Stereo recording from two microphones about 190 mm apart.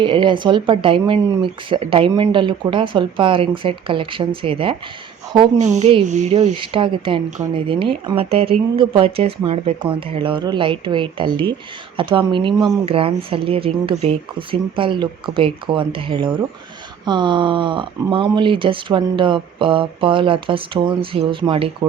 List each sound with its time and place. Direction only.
0.0 s speech: 25° right (ahead or behind)
5.5 s speech: 40° right (ahead or behind)
6.6 s speech: 25° right (ahead or behind)